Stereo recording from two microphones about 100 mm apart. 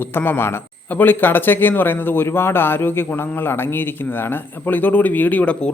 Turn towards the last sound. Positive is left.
turn(degrees=10)  # may be behind; listen again after turning